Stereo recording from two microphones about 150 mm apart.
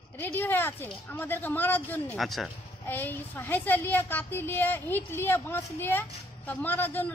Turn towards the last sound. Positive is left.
turn(degrees=15)  # may be behind; listen again after turning